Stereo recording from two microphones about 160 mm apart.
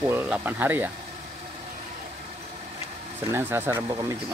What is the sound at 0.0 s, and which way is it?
Speech, 15° right (ahead or behind).